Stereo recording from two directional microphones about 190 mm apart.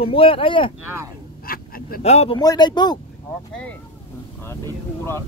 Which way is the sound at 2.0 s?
35° left (ahead or behind).